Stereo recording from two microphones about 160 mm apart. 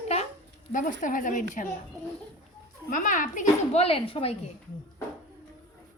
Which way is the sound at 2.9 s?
55° left (ahead or behind).